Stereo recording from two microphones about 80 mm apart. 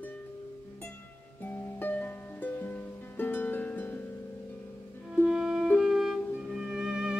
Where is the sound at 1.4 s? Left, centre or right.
Left.